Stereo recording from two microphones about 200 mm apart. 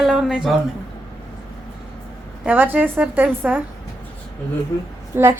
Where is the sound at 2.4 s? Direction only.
10° right (ahead or behind).